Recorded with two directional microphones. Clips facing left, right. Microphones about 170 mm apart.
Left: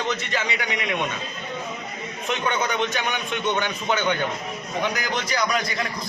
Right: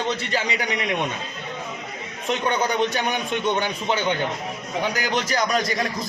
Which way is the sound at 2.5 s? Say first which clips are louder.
Right 3 dB; 35° right (ahead or behind).